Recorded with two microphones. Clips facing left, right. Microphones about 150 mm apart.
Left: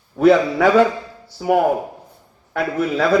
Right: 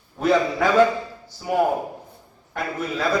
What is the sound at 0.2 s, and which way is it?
A man's voice, 65° left (ahead or behind).